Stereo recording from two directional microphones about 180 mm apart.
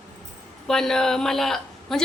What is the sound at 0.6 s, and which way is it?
A woman's voice, centre (ahead or behind).